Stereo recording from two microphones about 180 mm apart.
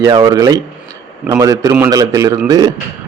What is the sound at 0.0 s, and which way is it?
A man's voice, 20° right (ahead or behind).